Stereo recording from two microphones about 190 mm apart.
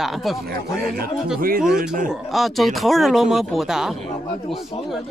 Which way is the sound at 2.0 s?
Centre (ahead or behind).